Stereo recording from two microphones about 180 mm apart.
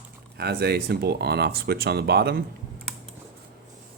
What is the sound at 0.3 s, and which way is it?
Speech, 60° right (ahead or behind).